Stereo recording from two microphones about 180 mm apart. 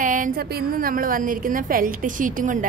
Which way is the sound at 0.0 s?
45° right (ahead or behind).